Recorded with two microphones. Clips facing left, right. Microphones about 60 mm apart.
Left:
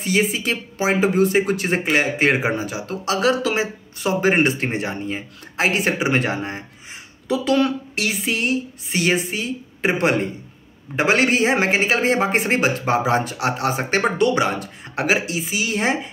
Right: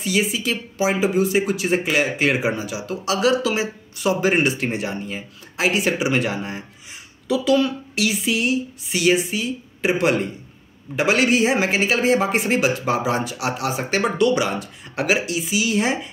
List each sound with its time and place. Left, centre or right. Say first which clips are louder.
0.0 s speech: left 1 dB; left